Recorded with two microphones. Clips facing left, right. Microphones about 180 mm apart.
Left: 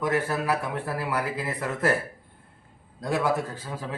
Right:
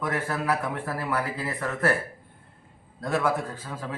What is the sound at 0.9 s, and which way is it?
Speech, 15° left (ahead or behind).